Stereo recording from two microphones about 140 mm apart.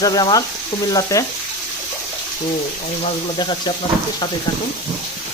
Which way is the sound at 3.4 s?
30° left (ahead or behind).